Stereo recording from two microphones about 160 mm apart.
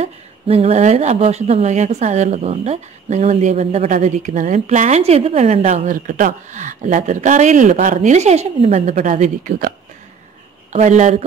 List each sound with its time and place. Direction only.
0.0 s speech: 40° right (ahead or behind)
10.7 s speech: 50° right (ahead or behind)